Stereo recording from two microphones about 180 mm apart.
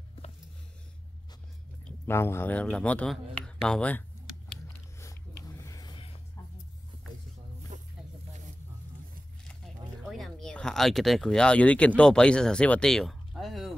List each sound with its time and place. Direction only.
1.9 s speech: 15° left (ahead or behind)
4.9 s a sound: 15° left (ahead or behind)
7.7 s snake: 40° right (ahead or behind)
10.0 s speech: centre (ahead or behind)